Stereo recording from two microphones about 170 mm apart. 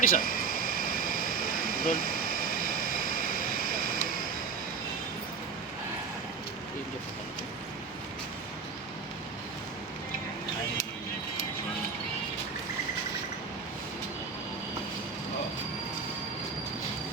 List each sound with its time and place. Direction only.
0.0 s air conditioning: 55° left (ahead or behind)